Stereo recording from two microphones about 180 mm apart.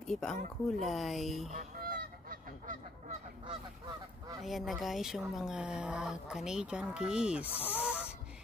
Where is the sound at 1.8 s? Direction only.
55° right (ahead or behind).